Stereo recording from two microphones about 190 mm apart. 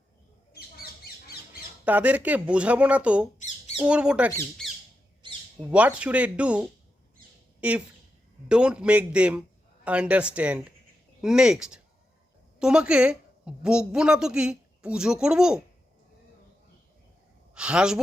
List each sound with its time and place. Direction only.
1.8 s a woman's voice: 5° right (ahead or behind)
5.2 s squawk: 25° right (ahead or behind)
5.5 s a woman's voice: 5° right (ahead or behind)
17.5 s a sound: 5° right (ahead or behind)